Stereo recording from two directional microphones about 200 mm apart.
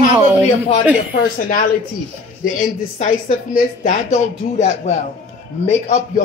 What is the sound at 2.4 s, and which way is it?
Speech, 40° left (ahead or behind).